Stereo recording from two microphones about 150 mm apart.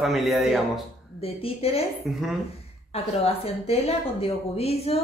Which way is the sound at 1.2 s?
40° left (ahead or behind).